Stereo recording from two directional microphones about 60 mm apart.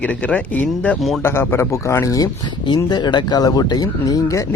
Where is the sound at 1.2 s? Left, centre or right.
Left.